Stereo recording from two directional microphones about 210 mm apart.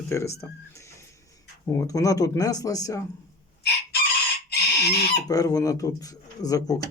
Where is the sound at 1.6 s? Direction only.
15° left (ahead or behind).